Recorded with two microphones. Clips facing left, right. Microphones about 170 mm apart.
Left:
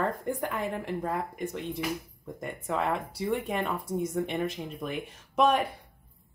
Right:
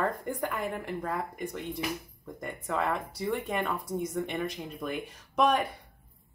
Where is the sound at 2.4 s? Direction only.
Centre (ahead or behind).